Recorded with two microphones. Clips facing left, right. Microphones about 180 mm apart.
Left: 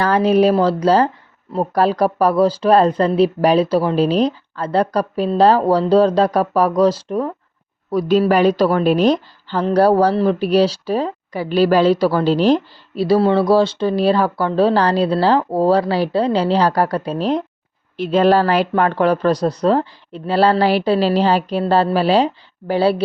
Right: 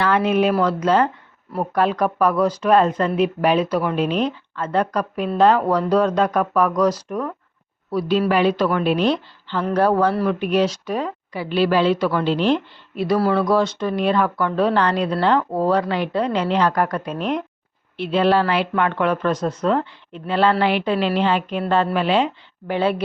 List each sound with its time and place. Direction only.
0.0 s speech: 35° left (ahead or behind)
7.9 s a woman's voice: 45° left (ahead or behind)